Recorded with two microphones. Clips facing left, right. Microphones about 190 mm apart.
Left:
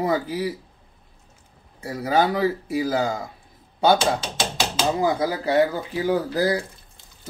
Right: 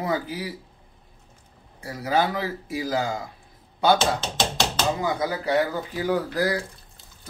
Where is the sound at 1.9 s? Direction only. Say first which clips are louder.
Left 3 dB; 30° left (ahead or behind).